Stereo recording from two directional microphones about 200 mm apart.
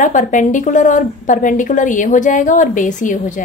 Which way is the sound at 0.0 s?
40° left (ahead or behind).